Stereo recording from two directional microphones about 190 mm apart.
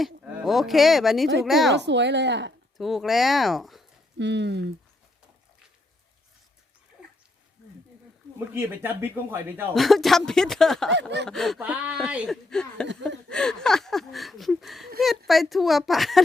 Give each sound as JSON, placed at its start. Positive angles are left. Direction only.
{"t": 0.4, "sound": "speech", "side_deg": 0}
{"t": 1.7, "sound": "speech", "side_deg": -65}
{"t": 2.7, "sound": "speech", "side_deg": 0}
{"t": 4.2, "sound": "speech", "side_deg": -65}
{"t": 8.5, "sound": "speech", "side_deg": -10}
{"t": 9.7, "sound": "speech", "side_deg": 0}